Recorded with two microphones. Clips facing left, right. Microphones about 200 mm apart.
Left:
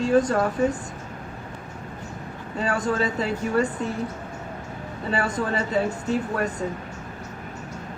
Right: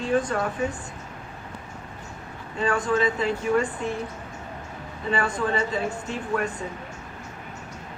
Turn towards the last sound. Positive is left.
turn(degrees=40)  # may be behind; listen again after turning